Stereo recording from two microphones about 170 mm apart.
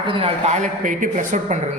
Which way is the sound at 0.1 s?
35° right (ahead or behind).